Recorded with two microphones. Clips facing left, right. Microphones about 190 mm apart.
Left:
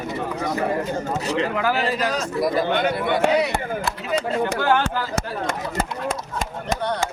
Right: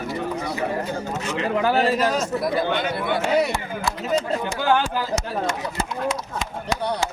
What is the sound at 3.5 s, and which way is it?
Speech, 60° left (ahead or behind).